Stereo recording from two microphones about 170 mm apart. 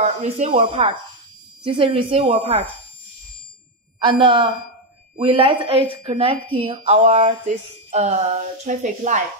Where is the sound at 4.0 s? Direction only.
30° right (ahead or behind); by 9.2 s 45° right (ahead or behind).